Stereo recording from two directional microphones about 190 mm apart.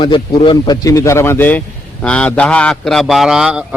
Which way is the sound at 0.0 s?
25° left (ahead or behind).